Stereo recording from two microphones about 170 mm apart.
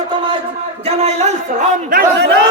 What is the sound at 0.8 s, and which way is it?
Speech, 35° right (ahead or behind).